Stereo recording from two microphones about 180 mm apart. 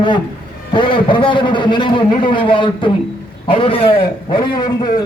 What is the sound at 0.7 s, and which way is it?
A man's voice, 25° left (ahead or behind).